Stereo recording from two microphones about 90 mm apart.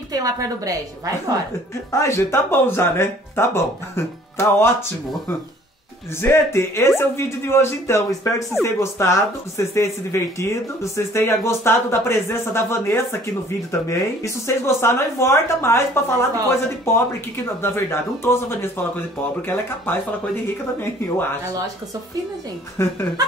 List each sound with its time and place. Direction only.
0.1 s a woman's voice: 40° right (ahead or behind)
1.9 s speech: 30° left (ahead or behind)
6.2 s speech: 30° left (ahead or behind)
22.8 s speech: 30° left (ahead or behind)